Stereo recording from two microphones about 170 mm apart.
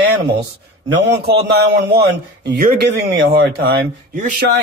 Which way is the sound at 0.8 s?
85° right.